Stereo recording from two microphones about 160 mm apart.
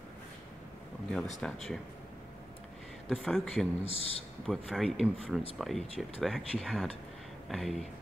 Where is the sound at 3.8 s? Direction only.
40° left (ahead or behind).